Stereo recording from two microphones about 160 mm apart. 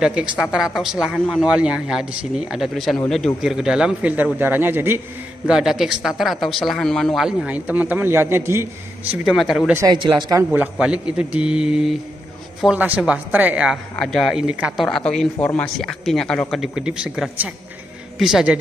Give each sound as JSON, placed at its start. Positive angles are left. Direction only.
{"t": 0.0, "sound": "a man's voice", "side_deg": -5}
{"t": 5.5, "sound": "speech", "side_deg": -5}
{"t": 9.8, "sound": "a man's voice", "side_deg": -25}
{"t": 10.5, "sound": "a man's voice", "side_deg": -10}
{"t": 14.9, "sound": "speech", "side_deg": 5}